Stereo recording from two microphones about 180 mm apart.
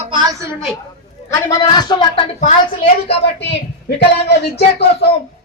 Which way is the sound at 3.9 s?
65° left (ahead or behind).